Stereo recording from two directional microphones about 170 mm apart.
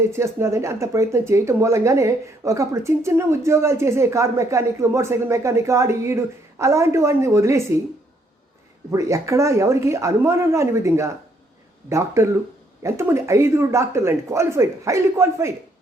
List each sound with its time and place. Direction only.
0.1 s speech: 15° right (ahead or behind)
8.9 s speech: 20° right (ahead or behind)